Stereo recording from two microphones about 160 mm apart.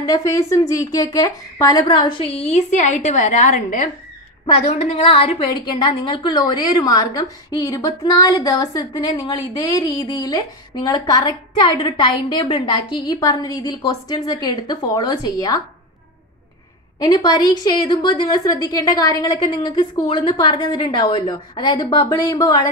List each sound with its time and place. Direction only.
0.0 s a woman's voice: 20° left (ahead or behind); by 3.9 s 55° left (ahead or behind)
4.6 s a woman's voice: 40° left (ahead or behind); by 15.6 s 20° left (ahead or behind)
17.0 s a woman's voice: 25° left (ahead or behind)